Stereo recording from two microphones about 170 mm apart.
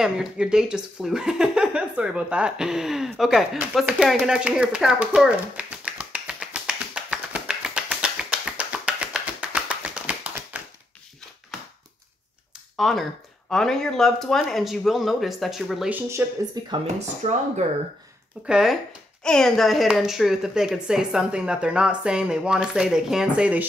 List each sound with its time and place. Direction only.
0.0 s a sound: 5° right (ahead or behind)
12.7 s speech: centre (ahead or behind)
16.8 s speech: 40° right (ahead or behind)
18.5 s speech: 5° right (ahead or behind)